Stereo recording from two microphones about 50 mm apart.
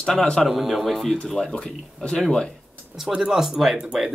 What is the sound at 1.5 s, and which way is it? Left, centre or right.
Speech, centre.